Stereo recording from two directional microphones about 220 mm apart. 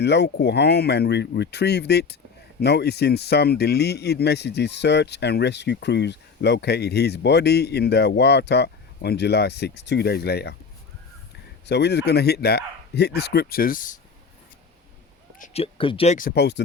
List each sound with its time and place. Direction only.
0.0 s speech: 50° left (ahead or behind)
11.6 s speech: 50° left (ahead or behind)
15.4 s speech: 25° left (ahead or behind)
16.1 s speech: 45° left (ahead or behind)